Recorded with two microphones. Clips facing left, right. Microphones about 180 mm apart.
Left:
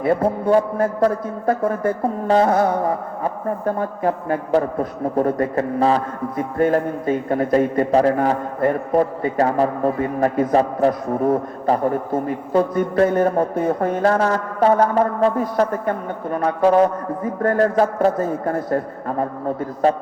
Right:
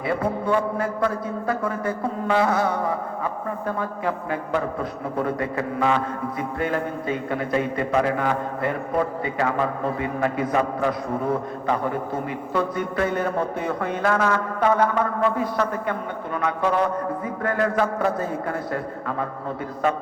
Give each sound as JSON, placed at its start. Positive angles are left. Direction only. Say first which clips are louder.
{"t": 0.0, "sound": "a man's voice", "louder": "left 6 dB", "side_deg": 45}
{"t": 2.2, "sound": "carnatic music", "louder": "left 5 dB", "side_deg": 35}
{"t": 2.5, "sound": "a man's voice", "louder": "left 5 dB", "side_deg": 50}